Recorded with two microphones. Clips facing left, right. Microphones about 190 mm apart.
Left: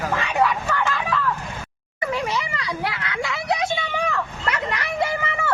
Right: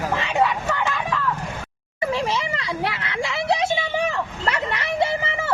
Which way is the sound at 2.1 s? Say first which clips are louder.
Right 1 dB; 25° right (ahead or behind).